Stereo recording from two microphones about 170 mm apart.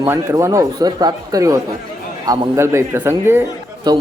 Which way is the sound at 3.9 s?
25° right (ahead or behind).